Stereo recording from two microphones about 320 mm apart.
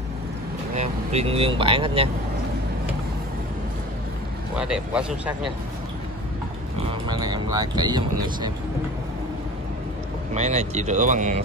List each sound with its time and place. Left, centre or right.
0.7 s speech: centre
4.6 s speech: centre
6.9 s speech: centre
10.3 s speech: right